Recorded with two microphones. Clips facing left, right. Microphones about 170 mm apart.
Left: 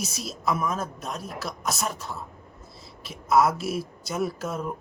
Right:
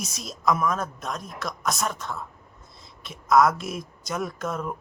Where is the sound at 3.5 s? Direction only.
5° left (ahead or behind).